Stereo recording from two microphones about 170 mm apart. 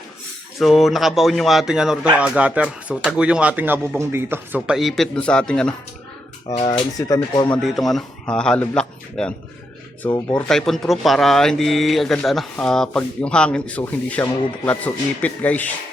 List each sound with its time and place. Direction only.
0.6 s speech: centre (ahead or behind)
6.5 s speech: 30° left (ahead or behind)
7.0 s speech: 20° left (ahead or behind)
7.5 s speech: centre (ahead or behind)
10.1 s speech: 25° left (ahead or behind)
10.3 s speech: centre (ahead or behind)